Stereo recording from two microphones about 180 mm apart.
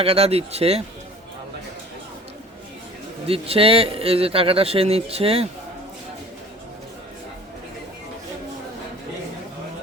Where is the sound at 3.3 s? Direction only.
30° right (ahead or behind).